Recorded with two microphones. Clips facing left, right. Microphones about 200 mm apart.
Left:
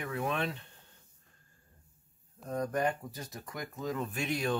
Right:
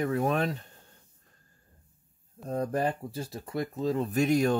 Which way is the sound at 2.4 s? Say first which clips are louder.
Right 3 dB; 30° right (ahead or behind).